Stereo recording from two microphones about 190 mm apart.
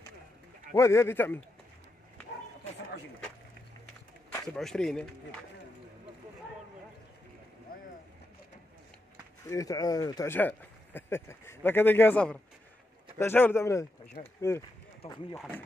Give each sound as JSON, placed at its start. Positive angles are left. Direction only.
{"t": 0.7, "sound": "speech", "side_deg": 15}
{"t": 4.3, "sound": "speech", "side_deg": 5}
{"t": 9.5, "sound": "speech", "side_deg": 20}
{"t": 14.2, "sound": "speech", "side_deg": 40}